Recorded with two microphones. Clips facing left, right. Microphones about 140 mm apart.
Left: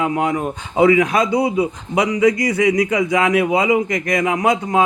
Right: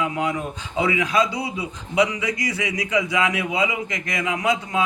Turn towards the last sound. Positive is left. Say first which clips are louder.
# left 6 dB
turn(degrees=40)  # may be behind; listen again after turning